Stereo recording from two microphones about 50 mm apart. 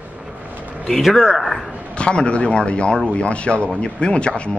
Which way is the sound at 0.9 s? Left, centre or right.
Centre.